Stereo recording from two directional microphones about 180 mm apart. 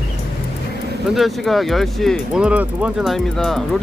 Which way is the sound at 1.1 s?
Centre (ahead or behind).